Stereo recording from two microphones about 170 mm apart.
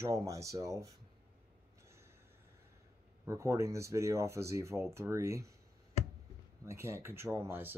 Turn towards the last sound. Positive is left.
turn(degrees=-10)  # may be behind; listen again after turning